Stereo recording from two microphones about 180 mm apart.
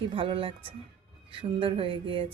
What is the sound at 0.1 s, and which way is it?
Speech, 30° right (ahead or behind).